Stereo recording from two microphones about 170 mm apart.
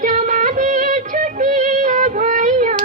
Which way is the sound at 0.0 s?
50° right (ahead or behind).